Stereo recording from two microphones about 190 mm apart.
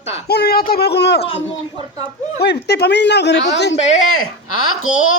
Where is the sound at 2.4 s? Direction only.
60° left (ahead or behind).